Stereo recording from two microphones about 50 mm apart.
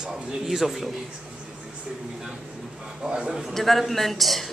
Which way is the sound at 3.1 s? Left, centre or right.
Right.